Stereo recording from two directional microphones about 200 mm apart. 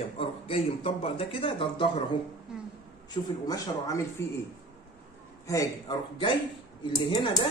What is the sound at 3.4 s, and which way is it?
Speech, 20° left (ahead or behind).